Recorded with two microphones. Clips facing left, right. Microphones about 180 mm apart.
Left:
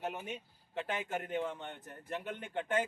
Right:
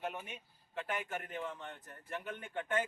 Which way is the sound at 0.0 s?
20° left (ahead or behind).